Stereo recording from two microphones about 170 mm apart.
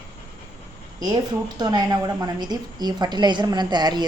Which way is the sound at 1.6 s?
25° right (ahead or behind).